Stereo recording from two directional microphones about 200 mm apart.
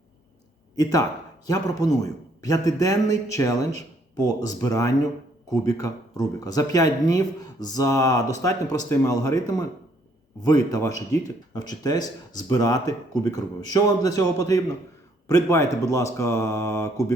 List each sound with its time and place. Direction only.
0.8 s speech: 15° left (ahead or behind)